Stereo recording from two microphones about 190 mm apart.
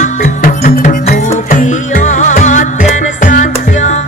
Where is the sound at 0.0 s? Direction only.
40° left (ahead or behind).